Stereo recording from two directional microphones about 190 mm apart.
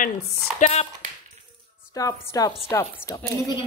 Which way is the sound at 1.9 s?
20° left (ahead or behind).